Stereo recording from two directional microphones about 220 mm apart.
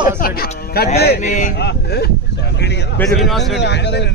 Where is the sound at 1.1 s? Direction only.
35° left (ahead or behind).